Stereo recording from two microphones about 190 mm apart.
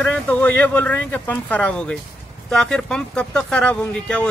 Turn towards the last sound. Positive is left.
turn(degrees=5)  # may be behind; listen again after turning